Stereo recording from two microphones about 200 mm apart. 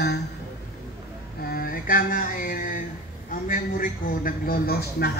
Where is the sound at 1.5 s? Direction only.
45° left (ahead or behind).